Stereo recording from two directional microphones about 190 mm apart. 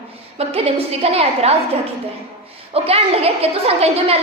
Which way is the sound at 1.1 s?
30° right (ahead or behind).